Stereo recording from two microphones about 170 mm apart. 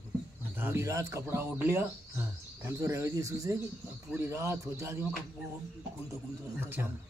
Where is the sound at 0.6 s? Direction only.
15° right (ahead or behind).